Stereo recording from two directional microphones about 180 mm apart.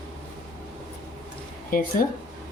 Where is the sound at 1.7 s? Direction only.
50° left (ahead or behind).